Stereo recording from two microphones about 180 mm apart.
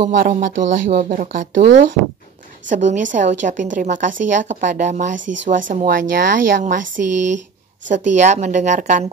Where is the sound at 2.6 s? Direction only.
45° right (ahead or behind).